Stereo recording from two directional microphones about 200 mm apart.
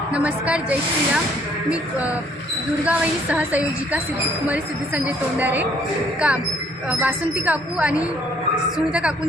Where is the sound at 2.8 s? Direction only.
5° right (ahead or behind).